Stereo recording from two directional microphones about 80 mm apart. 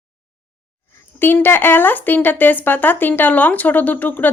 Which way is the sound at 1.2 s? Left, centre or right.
Left.